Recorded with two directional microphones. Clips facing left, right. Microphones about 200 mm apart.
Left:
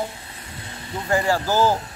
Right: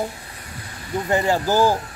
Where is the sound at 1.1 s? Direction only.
20° right (ahead or behind).